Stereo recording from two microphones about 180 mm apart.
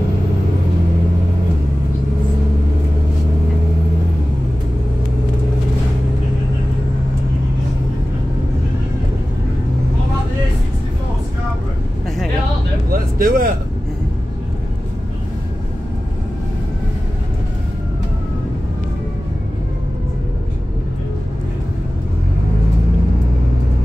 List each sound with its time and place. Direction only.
12.9 s vehicle: 55° right (ahead or behind)